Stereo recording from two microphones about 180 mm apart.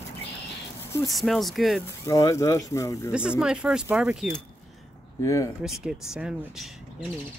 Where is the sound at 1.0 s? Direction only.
Centre (ahead or behind).